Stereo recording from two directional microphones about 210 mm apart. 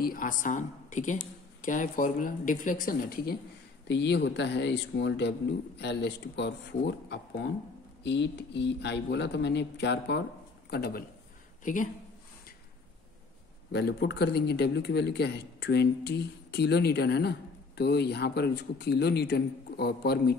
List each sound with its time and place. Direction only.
0.0 s speech: 40° left (ahead or behind)
3.8 s a man's voice: 55° left (ahead or behind); by 11.9 s 40° left (ahead or behind)
13.7 s a man's voice: 50° left (ahead or behind)